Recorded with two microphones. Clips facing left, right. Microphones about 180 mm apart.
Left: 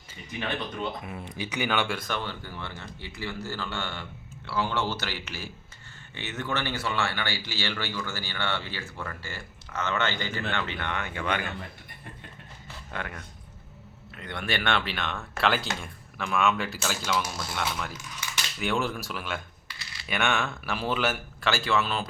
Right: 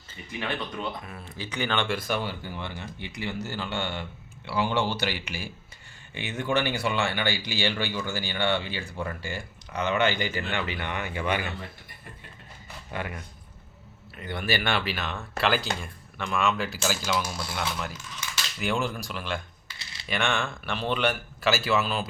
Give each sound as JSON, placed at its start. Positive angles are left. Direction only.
{"t": 1.0, "sound": "speech", "side_deg": 15}
{"t": 2.0, "sound": "speech", "side_deg": -10}
{"t": 12.6, "sound": "a sound", "side_deg": -10}
{"t": 14.2, "sound": "speech", "side_deg": -5}